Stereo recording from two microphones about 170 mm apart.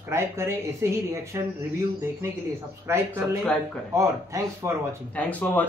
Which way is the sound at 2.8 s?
15° right (ahead or behind).